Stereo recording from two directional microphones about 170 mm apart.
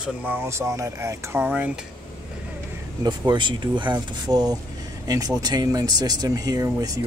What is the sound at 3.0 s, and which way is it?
Speech, 25° right (ahead or behind).